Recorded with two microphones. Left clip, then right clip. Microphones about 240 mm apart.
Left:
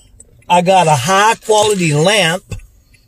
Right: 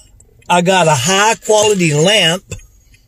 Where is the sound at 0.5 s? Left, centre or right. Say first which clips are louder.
Left 1 dB; right.